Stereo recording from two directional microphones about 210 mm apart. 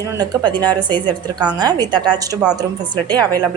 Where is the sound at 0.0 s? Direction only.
15° right (ahead or behind).